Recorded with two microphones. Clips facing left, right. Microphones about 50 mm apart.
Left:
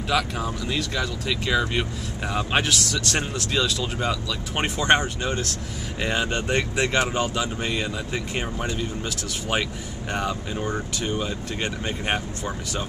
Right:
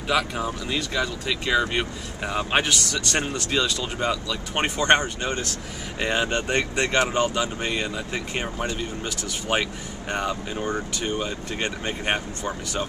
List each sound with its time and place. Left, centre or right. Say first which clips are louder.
0.1 s speech: right 1 dB; centre